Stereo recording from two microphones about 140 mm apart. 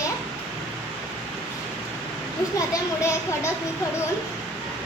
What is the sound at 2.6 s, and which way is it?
Speech, 20° left (ahead or behind).